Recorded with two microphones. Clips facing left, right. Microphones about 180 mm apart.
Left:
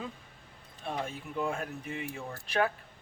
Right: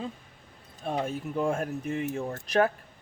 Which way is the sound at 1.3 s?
45° right (ahead or behind).